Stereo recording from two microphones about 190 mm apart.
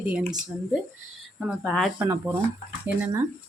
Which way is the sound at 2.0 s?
15° right (ahead or behind).